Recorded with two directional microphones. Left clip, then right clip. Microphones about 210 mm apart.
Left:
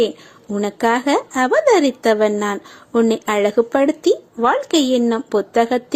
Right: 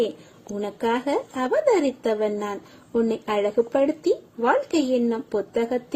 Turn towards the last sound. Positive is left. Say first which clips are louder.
# left 8 dB
turn(degrees=15)  # may be behind; listen again after turning